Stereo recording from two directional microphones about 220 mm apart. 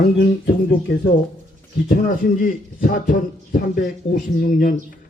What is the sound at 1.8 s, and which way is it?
A man's voice, 40° left (ahead or behind).